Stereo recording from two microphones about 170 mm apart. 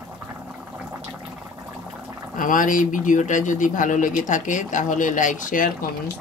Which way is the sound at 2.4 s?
50° left (ahead or behind).